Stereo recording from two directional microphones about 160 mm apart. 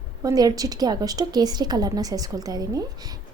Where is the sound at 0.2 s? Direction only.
20° right (ahead or behind).